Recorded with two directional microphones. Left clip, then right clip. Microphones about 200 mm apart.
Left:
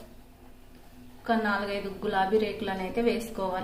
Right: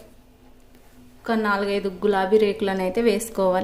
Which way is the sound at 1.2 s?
40° right (ahead or behind).